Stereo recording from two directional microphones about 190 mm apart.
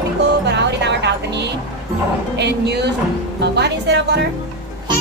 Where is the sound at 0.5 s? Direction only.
65° right (ahead or behind).